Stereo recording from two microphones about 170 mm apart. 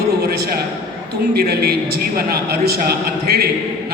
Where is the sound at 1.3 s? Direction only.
70° right (ahead or behind).